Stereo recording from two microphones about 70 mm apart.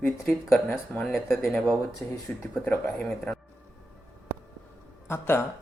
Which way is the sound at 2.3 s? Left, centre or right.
Left.